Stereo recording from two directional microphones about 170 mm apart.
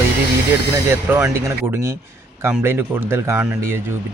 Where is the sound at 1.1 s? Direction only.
10° right (ahead or behind).